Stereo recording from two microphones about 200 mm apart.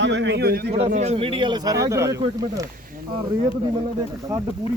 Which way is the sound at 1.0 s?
30° right (ahead or behind).